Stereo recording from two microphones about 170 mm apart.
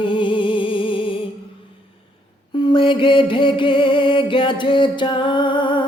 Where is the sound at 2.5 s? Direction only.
30° left (ahead or behind).